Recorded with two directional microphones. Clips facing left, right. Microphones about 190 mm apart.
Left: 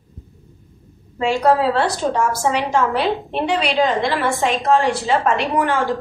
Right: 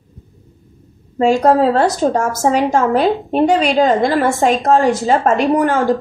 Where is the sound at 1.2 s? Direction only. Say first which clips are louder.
Right 5 dB; 45° right (ahead or behind).